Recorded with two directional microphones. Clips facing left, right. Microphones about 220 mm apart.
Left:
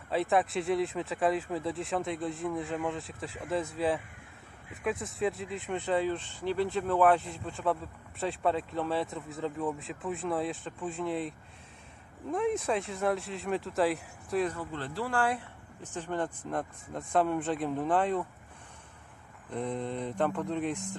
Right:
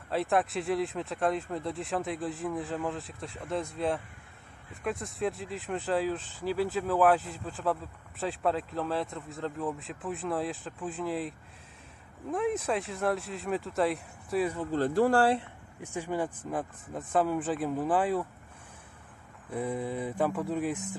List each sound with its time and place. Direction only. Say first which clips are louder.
0.1 s speech: even; centre (ahead or behind)
14.7 s speech: right 9 dB; 40° right (ahead or behind)
15.8 s speech: right 2 dB; 10° right (ahead or behind)
19.5 s speech: right 1 dB; 5° right (ahead or behind)